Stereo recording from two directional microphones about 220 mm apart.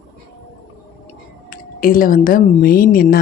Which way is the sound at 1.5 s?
40° left (ahead or behind).